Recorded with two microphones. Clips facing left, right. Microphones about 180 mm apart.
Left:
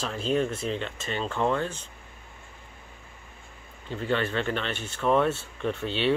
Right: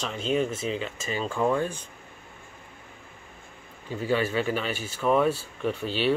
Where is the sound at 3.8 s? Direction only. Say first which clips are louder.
Right 2 dB; 10° right (ahead or behind).